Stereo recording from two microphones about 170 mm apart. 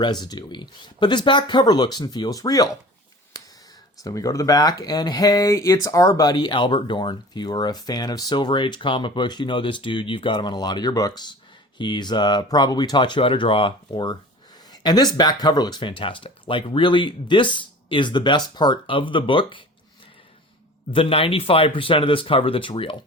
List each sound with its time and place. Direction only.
0.0 s speech: 25° left (ahead or behind)
4.0 s speech: 20° left (ahead or behind)
20.9 s speech: 35° left (ahead or behind)